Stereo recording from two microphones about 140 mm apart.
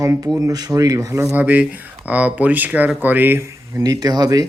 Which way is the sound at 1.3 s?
10° right (ahead or behind).